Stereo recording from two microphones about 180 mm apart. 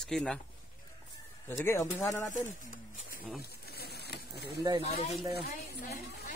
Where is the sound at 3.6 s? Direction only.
60° left (ahead or behind).